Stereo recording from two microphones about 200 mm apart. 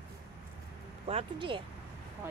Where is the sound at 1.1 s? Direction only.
25° right (ahead or behind).